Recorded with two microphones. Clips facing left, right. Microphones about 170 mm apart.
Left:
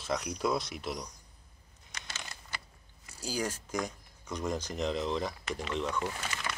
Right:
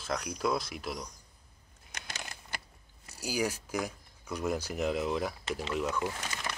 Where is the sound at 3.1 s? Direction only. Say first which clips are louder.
Right 2 dB; 10° right (ahead or behind).